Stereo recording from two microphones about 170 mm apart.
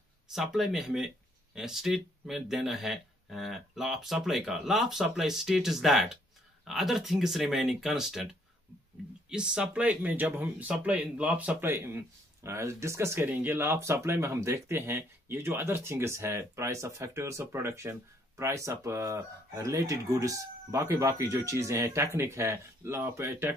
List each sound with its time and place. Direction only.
0.3 s speech: centre (ahead or behind)
9.3 s speech: 5° right (ahead or behind)